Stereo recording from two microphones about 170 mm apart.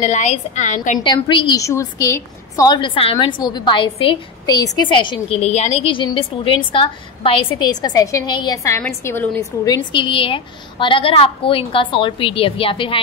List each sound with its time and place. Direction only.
0.0 s a woman's voice: 45° left (ahead or behind)
1.0 s a woman's voice: 25° left (ahead or behind); by 9.5 s 10° left (ahead or behind)
9.9 s a woman's voice: 30° left (ahead or behind)